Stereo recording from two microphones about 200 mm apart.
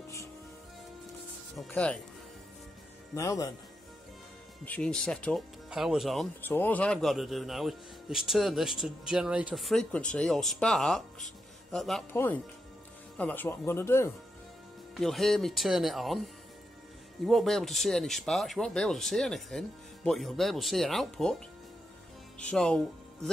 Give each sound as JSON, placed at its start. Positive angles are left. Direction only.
{"t": 1.7, "sound": "speech", "side_deg": 5}
{"t": 3.2, "sound": "speech", "side_deg": 15}
{"t": 4.6, "sound": "speech", "side_deg": 5}
{"t": 6.4, "sound": "speech", "side_deg": 10}
{"t": 13.2, "sound": "speech", "side_deg": 10}
{"t": 15.0, "sound": "speech", "side_deg": 0}
{"t": 22.5, "sound": "speech", "side_deg": 5}